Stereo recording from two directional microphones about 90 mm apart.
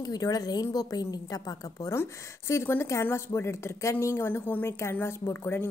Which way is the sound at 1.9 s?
30° left (ahead or behind).